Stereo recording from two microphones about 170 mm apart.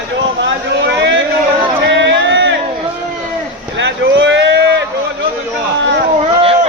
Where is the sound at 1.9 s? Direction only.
90° right.